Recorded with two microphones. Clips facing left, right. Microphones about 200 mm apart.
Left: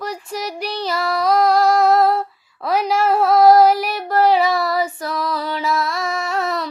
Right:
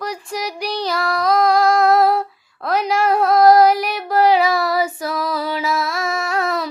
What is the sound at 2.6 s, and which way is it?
Female singing, 5° left (ahead or behind).